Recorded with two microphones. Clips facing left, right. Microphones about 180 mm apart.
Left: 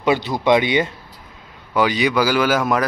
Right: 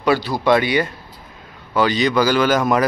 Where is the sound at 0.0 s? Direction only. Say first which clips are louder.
Even; 20° left (ahead or behind).